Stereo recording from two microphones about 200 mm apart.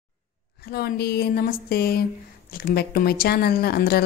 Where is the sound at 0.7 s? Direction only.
55° left (ahead or behind).